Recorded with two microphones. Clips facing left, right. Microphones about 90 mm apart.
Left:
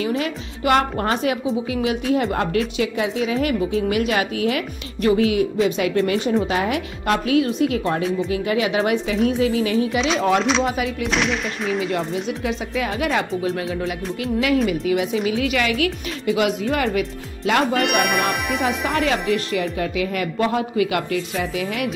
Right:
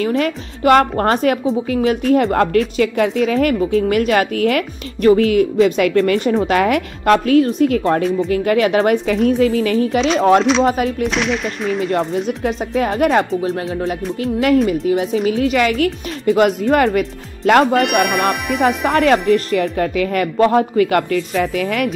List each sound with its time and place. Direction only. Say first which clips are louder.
0.0 s speech: right 5 dB; 45° right (ahead or behind)
1.4 s speech: right 5 dB; 40° right (ahead or behind)
11.1 s speech: right 3 dB; centre (ahead or behind)
11.9 s speech: right 5 dB; 40° right (ahead or behind)
17.7 s speech: right 4 dB; centre (ahead or behind)
19.2 s speech: right 6 dB; 40° right (ahead or behind)